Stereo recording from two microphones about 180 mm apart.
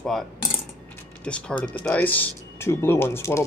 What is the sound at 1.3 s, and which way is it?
Speech, 5° left (ahead or behind).